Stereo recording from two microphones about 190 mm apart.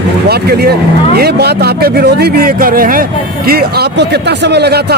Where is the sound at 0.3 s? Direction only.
55° right (ahead or behind).